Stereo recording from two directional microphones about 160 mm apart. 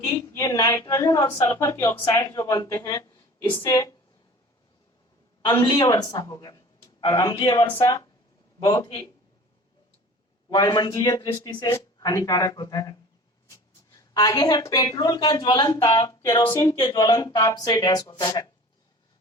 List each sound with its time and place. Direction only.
0.3 s speech: 15° left (ahead or behind)
5.5 s speech: 30° left (ahead or behind)
10.5 s speech: 25° left (ahead or behind)